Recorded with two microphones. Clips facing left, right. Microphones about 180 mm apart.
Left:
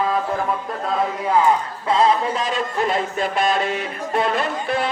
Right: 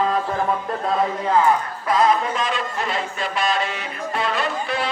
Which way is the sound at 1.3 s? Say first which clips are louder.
Left 1 dB; 15° left (ahead or behind).